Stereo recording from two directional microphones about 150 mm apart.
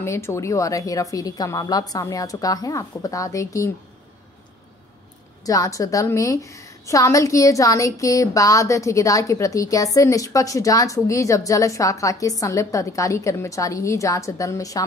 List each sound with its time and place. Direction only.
0.0 s a woman's voice: 20° left (ahead or behind)
5.4 s a woman's voice: 25° left (ahead or behind)